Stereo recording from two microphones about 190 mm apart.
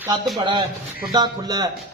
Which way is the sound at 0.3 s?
25° right (ahead or behind).